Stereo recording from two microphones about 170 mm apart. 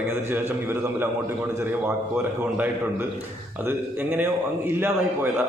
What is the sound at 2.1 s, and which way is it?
A man's voice, 10° right (ahead or behind).